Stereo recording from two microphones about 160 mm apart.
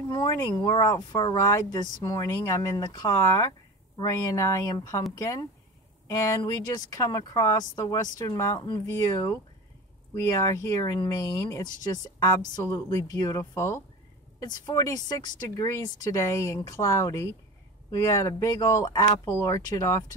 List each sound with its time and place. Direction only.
0.1 s speech: 25° left (ahead or behind)